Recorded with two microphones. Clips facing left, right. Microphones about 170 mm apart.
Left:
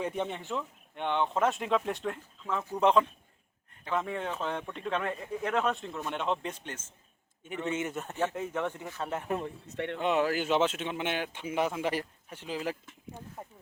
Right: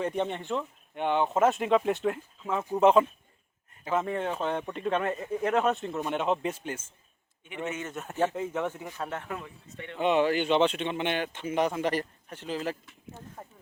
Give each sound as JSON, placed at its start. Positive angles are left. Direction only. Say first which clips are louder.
{"t": 0.0, "sound": "speech", "louder": "right 3 dB", "side_deg": 5}
{"t": 7.4, "sound": "a man's voice", "louder": "even", "side_deg": 40}
{"t": 7.9, "sound": "speech", "louder": "right 3 dB", "side_deg": -5}
{"t": 9.0, "sound": "speech", "louder": "left 2 dB", "side_deg": 0}
{"t": 9.6, "sound": "speech", "louder": "left 7 dB", "side_deg": 70}
{"t": 10.0, "sound": "speech", "louder": "right 4 dB", "side_deg": 0}